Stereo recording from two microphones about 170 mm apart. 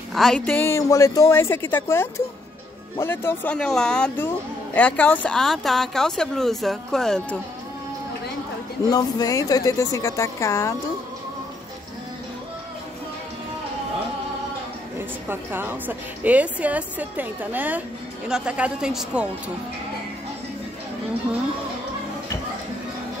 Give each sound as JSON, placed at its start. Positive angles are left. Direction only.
{"t": 0.1, "sound": "speech", "side_deg": 5}
{"t": 0.7, "sound": "a woman's voice", "side_deg": 15}
{"t": 8.9, "sound": "a woman's voice", "side_deg": 20}
{"t": 15.0, "sound": "a woman's voice", "side_deg": -10}